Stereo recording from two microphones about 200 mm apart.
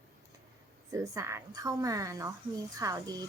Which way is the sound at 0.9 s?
15° right (ahead or behind).